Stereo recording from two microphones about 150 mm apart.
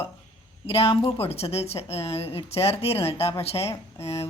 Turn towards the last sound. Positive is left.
turn(degrees=20)  # may be behind; listen again after turning